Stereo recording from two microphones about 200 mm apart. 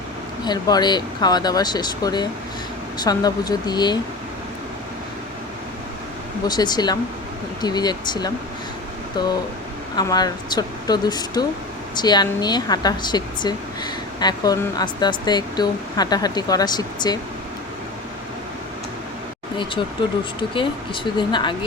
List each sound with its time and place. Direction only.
0.4 s speech: 20° left (ahead or behind)
6.5 s speech: 20° left (ahead or behind)
19.5 s speech: 25° left (ahead or behind)